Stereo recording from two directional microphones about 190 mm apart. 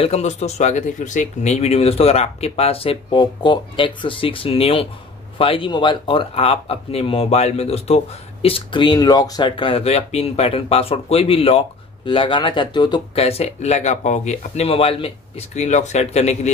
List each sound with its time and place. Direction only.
0.0 s speech: 35° left (ahead or behind)